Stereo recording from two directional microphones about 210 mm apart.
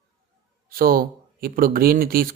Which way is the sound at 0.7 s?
45° right (ahead or behind).